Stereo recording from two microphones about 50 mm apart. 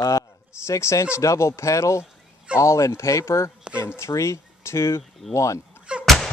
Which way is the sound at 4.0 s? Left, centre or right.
Left.